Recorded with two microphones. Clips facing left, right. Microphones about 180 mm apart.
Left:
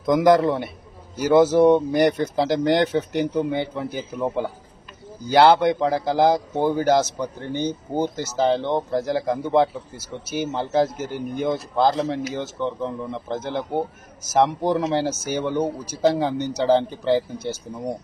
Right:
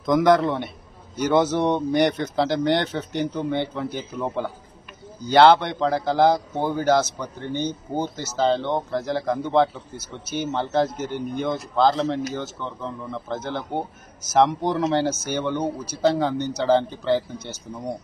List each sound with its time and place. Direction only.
0.0 s speech: 10° left (ahead or behind)